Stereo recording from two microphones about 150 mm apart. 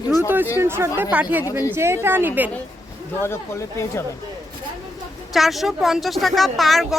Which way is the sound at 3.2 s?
15° left (ahead or behind).